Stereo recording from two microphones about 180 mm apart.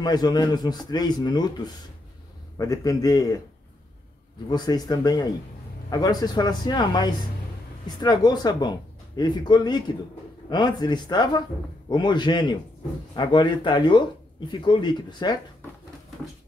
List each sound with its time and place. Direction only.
0.0 s speech: 20° left (ahead or behind)
4.5 s speech: 25° left (ahead or behind)